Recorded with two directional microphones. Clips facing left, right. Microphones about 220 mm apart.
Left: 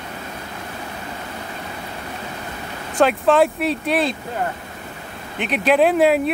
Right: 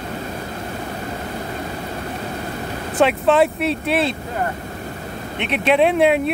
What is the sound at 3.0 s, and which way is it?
Speech, centre (ahead or behind).